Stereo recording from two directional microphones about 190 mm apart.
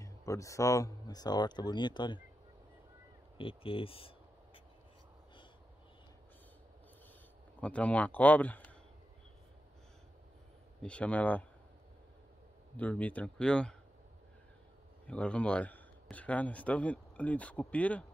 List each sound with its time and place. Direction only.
0.0 s speech: 15° left (ahead or behind)
3.3 s speech: 30° left (ahead or behind)
7.6 s speech: 5° left (ahead or behind)
10.8 s speech: 5° left (ahead or behind)
12.7 s speech: 5° left (ahead or behind)
15.0 s speech: 5° left (ahead or behind)